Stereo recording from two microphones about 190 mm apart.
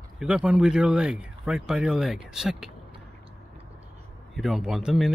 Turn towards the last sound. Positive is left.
turn(degrees=-5)  # may be behind; listen again after turning